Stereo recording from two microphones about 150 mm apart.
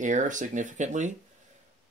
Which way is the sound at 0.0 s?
55° right (ahead or behind).